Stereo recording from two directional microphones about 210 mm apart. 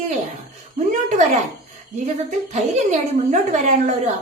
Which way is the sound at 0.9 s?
35° right (ahead or behind).